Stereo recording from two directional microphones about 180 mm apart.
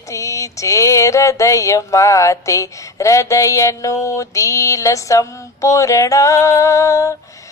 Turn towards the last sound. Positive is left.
turn(degrees=15)  # may be behind; listen again after turning